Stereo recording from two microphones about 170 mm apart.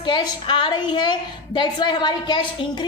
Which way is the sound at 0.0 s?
25° left (ahead or behind).